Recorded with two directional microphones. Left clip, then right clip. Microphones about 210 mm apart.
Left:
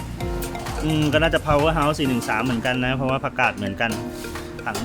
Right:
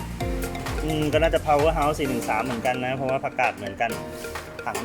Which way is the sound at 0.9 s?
15° left (ahead or behind).